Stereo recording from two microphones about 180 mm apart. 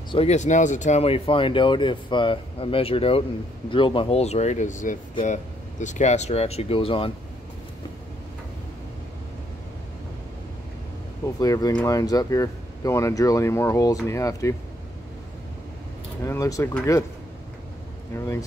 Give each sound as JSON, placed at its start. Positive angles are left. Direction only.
{"t": 0.1, "sound": "speech", "side_deg": 35}
{"t": 11.3, "sound": "speech", "side_deg": 20}
{"t": 16.3, "sound": "speech", "side_deg": 15}
{"t": 18.1, "sound": "speech", "side_deg": 15}